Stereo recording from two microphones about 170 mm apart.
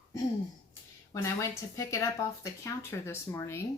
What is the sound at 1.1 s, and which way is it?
A woman's voice, 15° left (ahead or behind).